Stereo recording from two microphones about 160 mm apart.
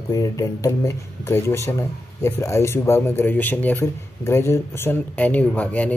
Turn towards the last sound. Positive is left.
turn(degrees=10)  # may be behind; listen again after turning